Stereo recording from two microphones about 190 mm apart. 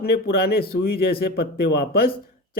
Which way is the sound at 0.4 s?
55° left (ahead or behind).